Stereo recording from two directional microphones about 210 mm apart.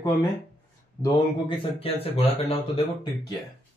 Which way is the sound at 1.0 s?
25° left (ahead or behind).